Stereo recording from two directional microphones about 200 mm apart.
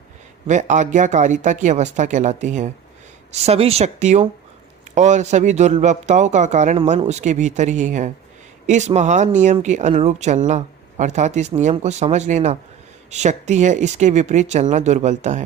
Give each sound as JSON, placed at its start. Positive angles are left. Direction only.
{"t": 0.4, "sound": "speech", "side_deg": -40}